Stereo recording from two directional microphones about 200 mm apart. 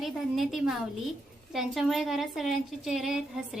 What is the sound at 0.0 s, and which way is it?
A woman's voice, centre (ahead or behind).